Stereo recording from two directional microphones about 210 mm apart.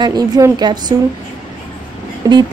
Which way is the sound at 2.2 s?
15° right (ahead or behind).